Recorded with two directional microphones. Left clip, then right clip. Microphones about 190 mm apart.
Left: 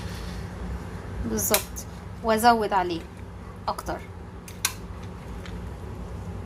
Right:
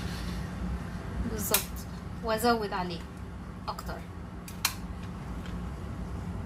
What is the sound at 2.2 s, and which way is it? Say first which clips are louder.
A woman's voice: left 8 dB; 50° left (ahead or behind).